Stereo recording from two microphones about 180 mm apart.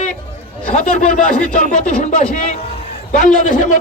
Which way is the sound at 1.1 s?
50° left (ahead or behind).